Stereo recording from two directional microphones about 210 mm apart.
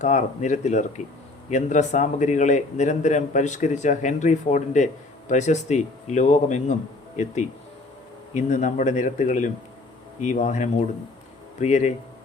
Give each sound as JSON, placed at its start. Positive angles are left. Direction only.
{"t": 0.0, "sound": "a man's voice", "side_deg": 35}
{"t": 8.3, "sound": "a man's voice", "side_deg": 35}